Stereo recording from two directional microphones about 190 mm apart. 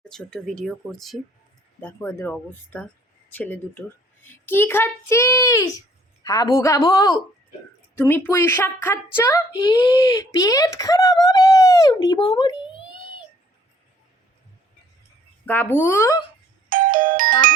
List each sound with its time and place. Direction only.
0.1 s a woman's voice: 5° left (ahead or behind); by 12.5 s 20° left (ahead or behind)
15.4 s a woman's voice: 10° left (ahead or behind)
16.6 s music: 45° right (ahead or behind)